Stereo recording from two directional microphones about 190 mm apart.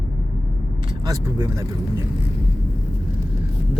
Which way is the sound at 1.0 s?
15° right (ahead or behind).